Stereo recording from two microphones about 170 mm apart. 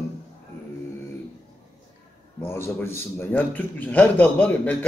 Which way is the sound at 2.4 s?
15° left (ahead or behind).